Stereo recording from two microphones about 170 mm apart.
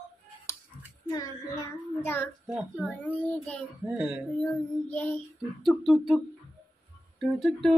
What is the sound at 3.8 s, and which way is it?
Speech, 5° right (ahead or behind).